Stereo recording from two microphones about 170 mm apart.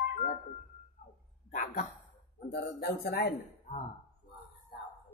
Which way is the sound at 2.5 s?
65° left (ahead or behind).